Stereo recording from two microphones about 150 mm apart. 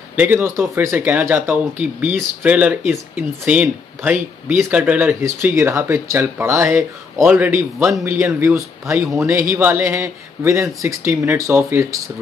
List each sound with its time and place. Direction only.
0.1 s speech: 10° right (ahead or behind)